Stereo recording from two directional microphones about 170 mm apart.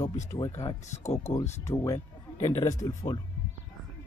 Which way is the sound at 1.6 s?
15° left (ahead or behind).